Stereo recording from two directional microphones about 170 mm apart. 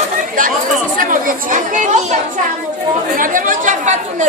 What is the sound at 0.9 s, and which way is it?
Speech, 55° right (ahead or behind).